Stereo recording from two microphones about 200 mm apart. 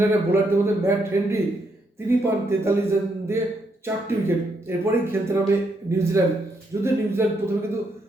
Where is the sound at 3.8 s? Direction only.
10° right (ahead or behind).